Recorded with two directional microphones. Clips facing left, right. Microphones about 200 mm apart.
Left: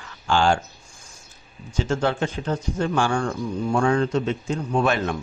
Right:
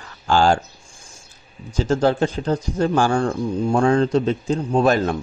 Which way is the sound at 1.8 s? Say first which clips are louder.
Right 5 dB; 35° right (ahead or behind).